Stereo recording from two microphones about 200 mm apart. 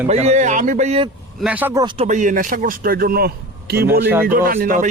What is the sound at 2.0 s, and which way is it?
Speech, 40° right (ahead or behind).